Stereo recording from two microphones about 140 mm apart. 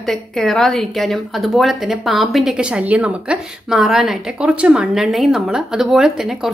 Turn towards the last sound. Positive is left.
turn(degrees=-5)  # may be behind; listen again after turning